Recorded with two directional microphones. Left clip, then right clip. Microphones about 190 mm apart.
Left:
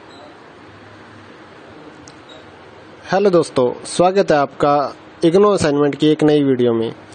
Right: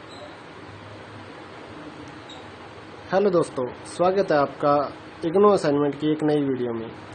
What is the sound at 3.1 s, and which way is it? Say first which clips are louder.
Speech: left 6 dB; 35° left (ahead or behind).